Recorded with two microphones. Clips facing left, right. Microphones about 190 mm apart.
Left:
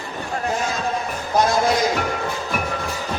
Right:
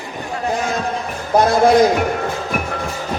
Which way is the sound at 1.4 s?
55° right (ahead or behind).